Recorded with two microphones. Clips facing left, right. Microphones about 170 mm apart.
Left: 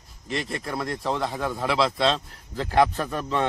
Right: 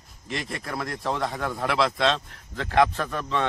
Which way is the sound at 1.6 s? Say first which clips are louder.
Left 1 dB; 25° left (ahead or behind).